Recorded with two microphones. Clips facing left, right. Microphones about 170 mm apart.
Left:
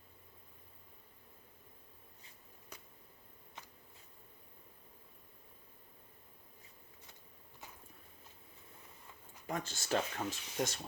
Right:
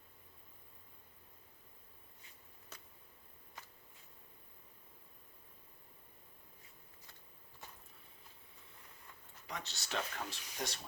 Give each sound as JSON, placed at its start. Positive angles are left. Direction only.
{"t": 9.5, "sound": "speech", "side_deg": 50}